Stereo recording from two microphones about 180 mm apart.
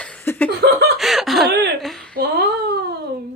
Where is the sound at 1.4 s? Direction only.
65° right (ahead or behind).